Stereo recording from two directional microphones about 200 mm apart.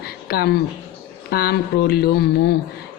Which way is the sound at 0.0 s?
50° left (ahead or behind).